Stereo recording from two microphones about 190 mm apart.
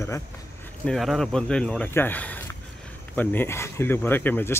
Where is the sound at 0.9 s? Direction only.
Centre (ahead or behind).